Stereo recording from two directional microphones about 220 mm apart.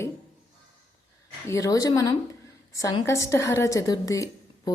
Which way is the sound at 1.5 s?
15° left (ahead or behind).